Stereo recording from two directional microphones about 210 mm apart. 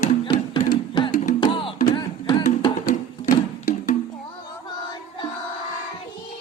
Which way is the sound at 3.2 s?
40° left (ahead or behind).